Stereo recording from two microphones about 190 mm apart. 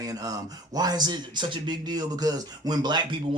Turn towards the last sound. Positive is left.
turn(degrees=-25)  # may be behind; listen again after turning